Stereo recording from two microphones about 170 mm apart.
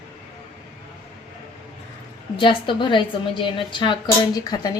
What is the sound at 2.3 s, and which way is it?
A woman's voice, 30° left (ahead or behind).